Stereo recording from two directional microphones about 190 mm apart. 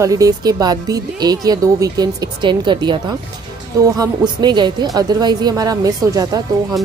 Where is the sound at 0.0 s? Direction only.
20° right (ahead or behind).